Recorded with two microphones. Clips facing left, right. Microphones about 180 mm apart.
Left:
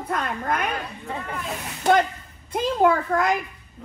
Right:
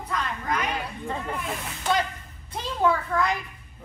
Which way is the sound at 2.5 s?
50° left (ahead or behind).